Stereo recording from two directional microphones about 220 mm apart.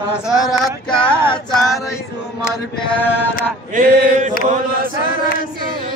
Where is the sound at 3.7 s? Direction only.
35° right (ahead or behind).